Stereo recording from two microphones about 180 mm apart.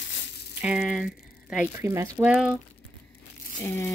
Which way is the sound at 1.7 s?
15° right (ahead or behind).